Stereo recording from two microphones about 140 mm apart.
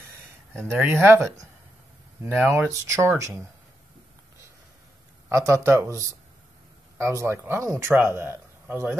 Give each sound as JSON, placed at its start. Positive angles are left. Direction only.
{"t": 0.7, "sound": "speech", "side_deg": -15}
{"t": 5.3, "sound": "speech", "side_deg": -20}